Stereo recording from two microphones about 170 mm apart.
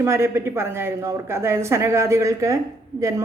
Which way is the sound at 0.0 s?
15° right (ahead or behind).